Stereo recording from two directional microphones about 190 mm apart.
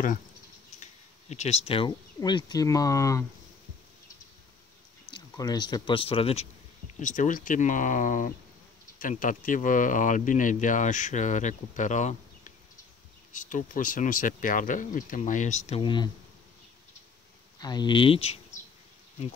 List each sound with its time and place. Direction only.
1.3 s speech: 35° left (ahead or behind); by 3.3 s 15° left (ahead or behind)
5.1 s speech: 20° left (ahead or behind)
7.0 s speech: 45° left (ahead or behind)
15.8 s speech: 25° left (ahead or behind)
17.6 s speech: 20° left (ahead or behind)